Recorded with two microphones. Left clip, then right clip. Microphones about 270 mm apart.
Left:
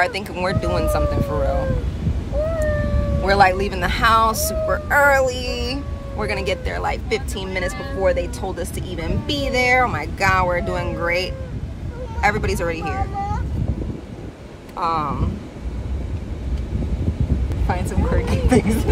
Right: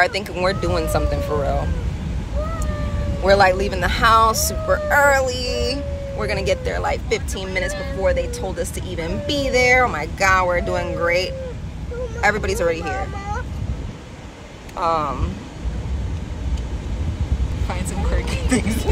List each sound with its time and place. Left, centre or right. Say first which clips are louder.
0.0 s speech: right 2 dB; centre
3.3 s speech: right 1 dB; centre
14.8 s speech: right 1 dB; centre
17.6 s speech: left 4 dB; left